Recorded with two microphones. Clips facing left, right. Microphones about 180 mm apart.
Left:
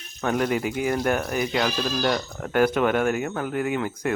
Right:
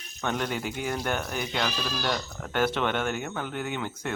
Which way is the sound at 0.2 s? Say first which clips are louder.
Left 6 dB; 5° left (ahead or behind).